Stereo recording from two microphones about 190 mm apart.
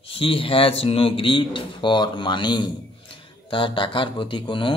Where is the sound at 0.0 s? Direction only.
30° left (ahead or behind).